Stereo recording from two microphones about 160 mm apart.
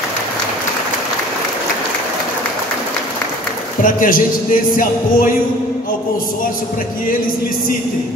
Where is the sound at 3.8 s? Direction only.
60° left (ahead or behind).